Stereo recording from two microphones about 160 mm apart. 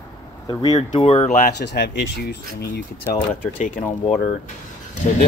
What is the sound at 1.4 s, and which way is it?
Speech, 90° left.